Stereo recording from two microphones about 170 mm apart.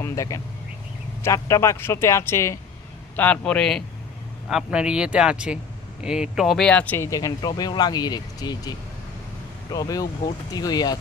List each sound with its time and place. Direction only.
0.0 s a man's voice: 20° left (ahead or behind)